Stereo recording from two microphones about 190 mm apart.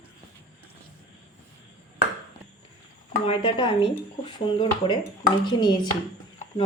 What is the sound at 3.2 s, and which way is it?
Speech, 30° left (ahead or behind).